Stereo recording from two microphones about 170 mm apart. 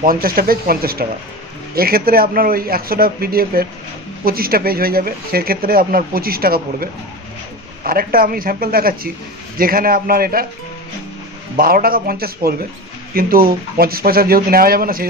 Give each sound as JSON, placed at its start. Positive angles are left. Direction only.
{"t": 0.0, "sound": "speech", "side_deg": -60}
{"t": 11.5, "sound": "speech", "side_deg": -60}